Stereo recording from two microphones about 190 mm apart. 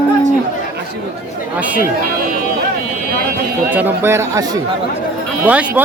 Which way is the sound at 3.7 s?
10° right (ahead or behind).